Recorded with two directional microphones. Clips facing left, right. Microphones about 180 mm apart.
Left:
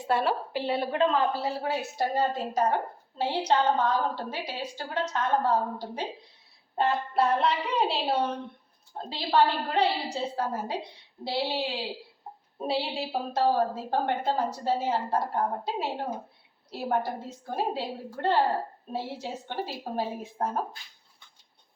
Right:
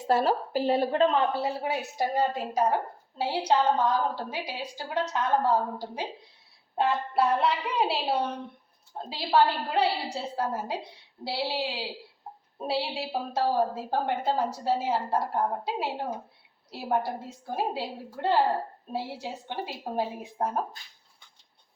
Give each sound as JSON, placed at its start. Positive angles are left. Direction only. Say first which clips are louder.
{"t": 0.1, "sound": "a woman's voice", "louder": "right 2 dB", "side_deg": -40}
{"t": 2.0, "sound": "a woman's voice", "louder": "right 1 dB", "side_deg": -10}
{"t": 9.0, "sound": "a woman's voice", "louder": "even", "side_deg": -5}